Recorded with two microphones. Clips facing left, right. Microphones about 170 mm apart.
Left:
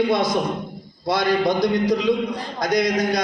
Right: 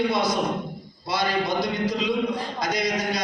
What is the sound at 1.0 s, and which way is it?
A man's voice, 50° left (ahead or behind).